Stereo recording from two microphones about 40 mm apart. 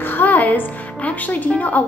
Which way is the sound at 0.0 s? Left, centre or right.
Left.